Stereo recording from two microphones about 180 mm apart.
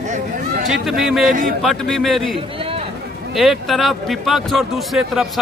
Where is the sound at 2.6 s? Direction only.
30° right (ahead or behind).